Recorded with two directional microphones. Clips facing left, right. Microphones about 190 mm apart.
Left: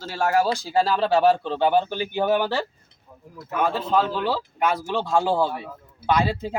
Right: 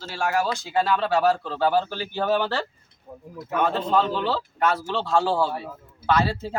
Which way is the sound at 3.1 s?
50° right (ahead or behind).